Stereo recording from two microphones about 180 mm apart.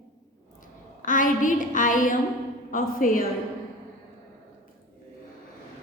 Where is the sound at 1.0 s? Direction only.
45° left (ahead or behind).